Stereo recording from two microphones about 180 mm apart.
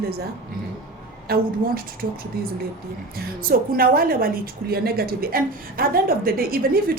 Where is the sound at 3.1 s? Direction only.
55° right (ahead or behind).